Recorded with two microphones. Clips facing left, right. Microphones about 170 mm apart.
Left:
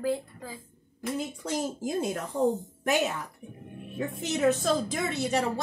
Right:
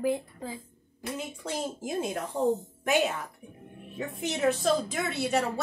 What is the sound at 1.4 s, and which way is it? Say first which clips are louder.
Speech: left 3 dB; 40° left (ahead or behind).